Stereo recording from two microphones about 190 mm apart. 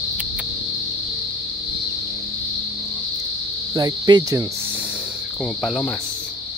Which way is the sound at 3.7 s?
20° right (ahead or behind).